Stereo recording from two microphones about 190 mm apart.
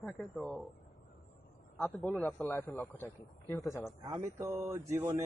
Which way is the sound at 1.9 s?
5° left (ahead or behind).